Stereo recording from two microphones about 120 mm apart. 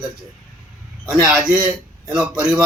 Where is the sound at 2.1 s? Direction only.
10° right (ahead or behind).